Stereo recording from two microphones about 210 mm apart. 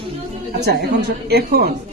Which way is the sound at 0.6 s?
50° right (ahead or behind).